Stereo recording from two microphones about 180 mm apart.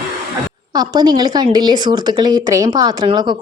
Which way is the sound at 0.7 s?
20° right (ahead or behind).